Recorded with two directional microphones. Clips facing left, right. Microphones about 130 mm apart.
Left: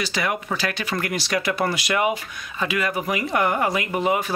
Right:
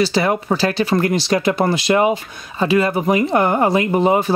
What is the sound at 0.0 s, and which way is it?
Speech, 30° right (ahead or behind).